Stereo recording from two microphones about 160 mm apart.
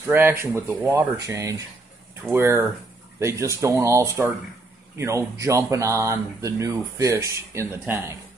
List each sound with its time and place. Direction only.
0.0 s speech: 15° right (ahead or behind)